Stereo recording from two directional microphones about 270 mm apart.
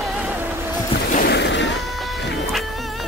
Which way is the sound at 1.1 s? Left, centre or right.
Left.